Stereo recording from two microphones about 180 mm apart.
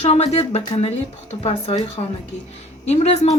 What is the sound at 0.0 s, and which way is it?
Speech, 35° left (ahead or behind).